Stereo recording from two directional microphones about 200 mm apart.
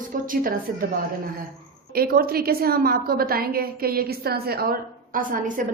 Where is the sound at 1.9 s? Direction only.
50° right (ahead or behind).